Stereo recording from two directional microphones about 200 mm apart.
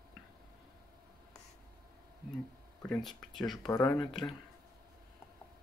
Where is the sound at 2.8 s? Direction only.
Centre (ahead or behind).